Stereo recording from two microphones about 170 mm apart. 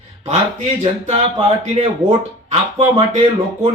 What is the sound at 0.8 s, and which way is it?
Speech, 40° right (ahead or behind).